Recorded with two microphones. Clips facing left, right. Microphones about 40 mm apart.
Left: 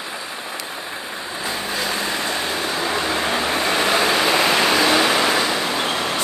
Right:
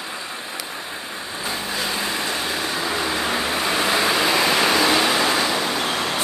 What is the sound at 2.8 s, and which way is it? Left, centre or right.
Vehicle, left.